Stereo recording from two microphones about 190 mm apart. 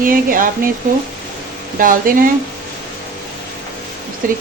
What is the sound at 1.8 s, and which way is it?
Speech, 45° right (ahead or behind).